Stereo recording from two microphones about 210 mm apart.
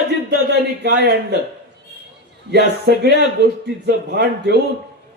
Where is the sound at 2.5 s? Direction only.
50° right (ahead or behind).